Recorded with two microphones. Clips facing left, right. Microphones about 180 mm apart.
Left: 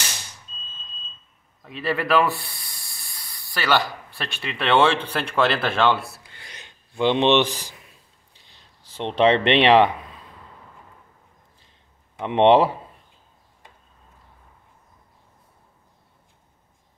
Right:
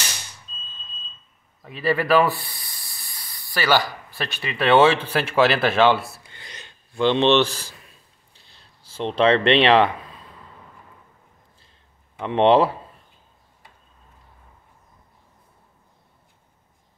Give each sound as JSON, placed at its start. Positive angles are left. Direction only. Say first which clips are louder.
{"t": 1.6, "sound": "speech", "louder": "right 3 dB", "side_deg": -5}
{"t": 6.4, "sound": "a sound", "louder": "right 2 dB", "side_deg": 10}
{"t": 12.2, "sound": "speech", "louder": "left 1 dB", "side_deg": 15}